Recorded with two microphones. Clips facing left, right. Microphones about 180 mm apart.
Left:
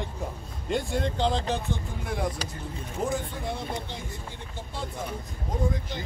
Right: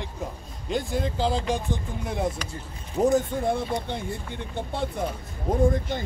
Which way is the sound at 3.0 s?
45° right (ahead or behind).